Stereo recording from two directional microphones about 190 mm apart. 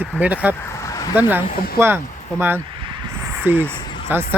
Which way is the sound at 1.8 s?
15° right (ahead or behind).